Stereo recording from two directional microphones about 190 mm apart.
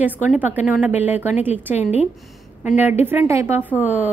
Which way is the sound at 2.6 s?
10° right (ahead or behind).